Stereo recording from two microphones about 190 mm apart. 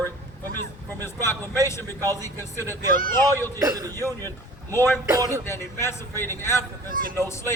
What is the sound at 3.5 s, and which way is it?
Speech, 20° right (ahead or behind).